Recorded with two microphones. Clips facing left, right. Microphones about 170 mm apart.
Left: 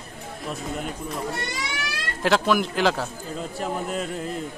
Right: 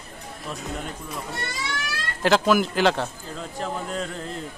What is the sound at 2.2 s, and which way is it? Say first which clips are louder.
Speech: right 2 dB; centre (ahead or behind).